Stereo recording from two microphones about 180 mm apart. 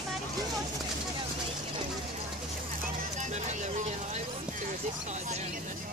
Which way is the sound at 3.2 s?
40° right (ahead or behind).